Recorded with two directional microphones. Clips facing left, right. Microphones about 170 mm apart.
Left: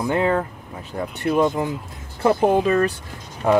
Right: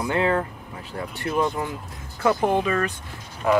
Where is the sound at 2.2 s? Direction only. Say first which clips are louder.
Left 4 dB; 35° left (ahead or behind).